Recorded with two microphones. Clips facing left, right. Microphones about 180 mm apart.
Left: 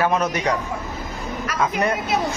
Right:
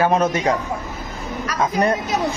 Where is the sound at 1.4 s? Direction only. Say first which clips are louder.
Right 3 dB; 35° right (ahead or behind).